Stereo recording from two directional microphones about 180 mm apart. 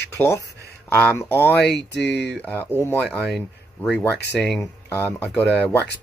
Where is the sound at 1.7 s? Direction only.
70° left (ahead or behind).